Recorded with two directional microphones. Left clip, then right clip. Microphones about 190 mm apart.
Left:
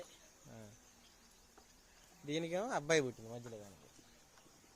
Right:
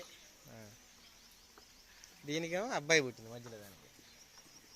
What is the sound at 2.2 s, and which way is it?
Speech, 5° left (ahead or behind).